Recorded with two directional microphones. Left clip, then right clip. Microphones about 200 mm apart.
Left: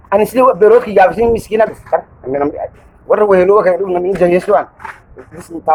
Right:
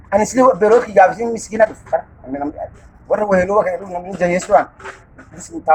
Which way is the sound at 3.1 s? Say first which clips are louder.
Left 6 dB; 20° left (ahead or behind).